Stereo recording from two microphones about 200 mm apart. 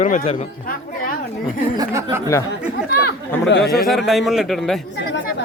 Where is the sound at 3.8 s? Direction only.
Centre (ahead or behind).